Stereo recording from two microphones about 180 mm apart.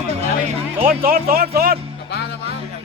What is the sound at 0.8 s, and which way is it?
Speech, 55° right (ahead or behind).